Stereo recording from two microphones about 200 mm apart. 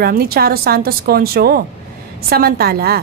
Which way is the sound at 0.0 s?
50° right (ahead or behind).